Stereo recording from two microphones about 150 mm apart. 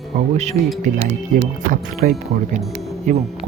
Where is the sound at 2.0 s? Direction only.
65° right (ahead or behind).